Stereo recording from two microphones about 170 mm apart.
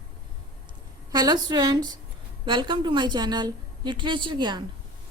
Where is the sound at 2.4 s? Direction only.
30° right (ahead or behind).